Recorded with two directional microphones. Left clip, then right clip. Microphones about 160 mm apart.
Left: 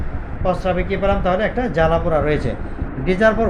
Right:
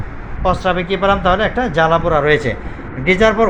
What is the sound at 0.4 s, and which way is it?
Speech, 20° right (ahead or behind).